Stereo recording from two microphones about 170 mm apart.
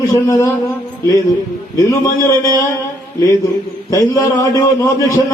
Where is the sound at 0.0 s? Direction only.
20° left (ahead or behind).